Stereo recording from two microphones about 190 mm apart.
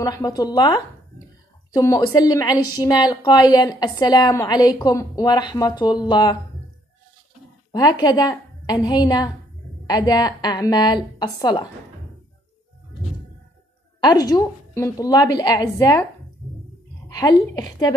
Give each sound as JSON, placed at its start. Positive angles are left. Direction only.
{"t": 0.0, "sound": "a woman's voice", "side_deg": 20}
{"t": 7.7, "sound": "a woman's voice", "side_deg": 20}
{"t": 14.0, "sound": "a woman's voice", "side_deg": 20}
{"t": 17.1, "sound": "a woman's voice", "side_deg": 20}